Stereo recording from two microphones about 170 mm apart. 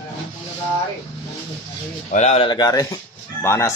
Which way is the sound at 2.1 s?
45° left (ahead or behind).